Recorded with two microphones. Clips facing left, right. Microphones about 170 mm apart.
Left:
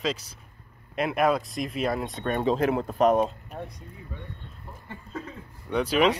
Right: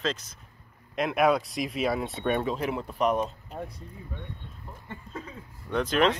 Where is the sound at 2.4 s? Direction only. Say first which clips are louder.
Left 6 dB; 40° left (ahead or behind).